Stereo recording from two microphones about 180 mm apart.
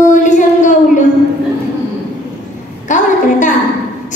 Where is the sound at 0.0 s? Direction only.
45° left (ahead or behind).